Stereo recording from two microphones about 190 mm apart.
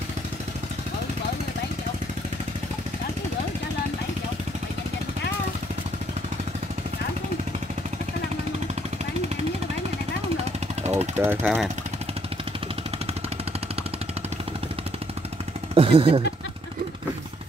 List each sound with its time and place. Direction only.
10.8 s vehicle: 35° right (ahead or behind)
11.1 s speech: 10° right (ahead or behind)
15.7 s a sound: 30° right (ahead or behind)